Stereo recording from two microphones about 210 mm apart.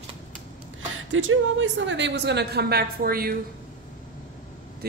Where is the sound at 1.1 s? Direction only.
70° right (ahead or behind); by 3.3 s 45° right (ahead or behind).